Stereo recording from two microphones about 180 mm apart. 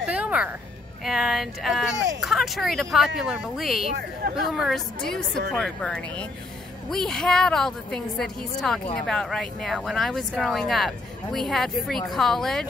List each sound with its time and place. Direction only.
0.0 s a sound: 5° right (ahead or behind)
1.0 s speech: centre (ahead or behind)
4.2 s speech: 60° right (ahead or behind)
4.6 s a woman's voice: centre (ahead or behind)